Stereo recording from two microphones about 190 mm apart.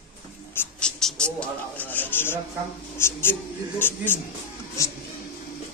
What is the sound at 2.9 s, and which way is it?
Speech, 10° left (ahead or behind).